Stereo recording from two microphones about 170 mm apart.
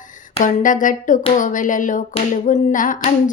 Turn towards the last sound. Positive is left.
turn(degrees=50)  # may be behind; listen again after turning